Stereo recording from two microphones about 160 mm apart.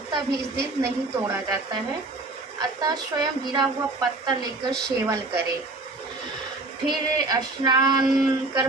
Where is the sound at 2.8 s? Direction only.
25° right (ahead or behind).